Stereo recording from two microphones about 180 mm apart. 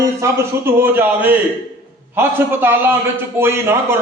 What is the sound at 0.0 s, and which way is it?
A man's voice, 15° right (ahead or behind).